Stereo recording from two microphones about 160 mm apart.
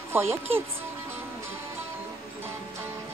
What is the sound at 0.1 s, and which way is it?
Speech, 15° right (ahead or behind).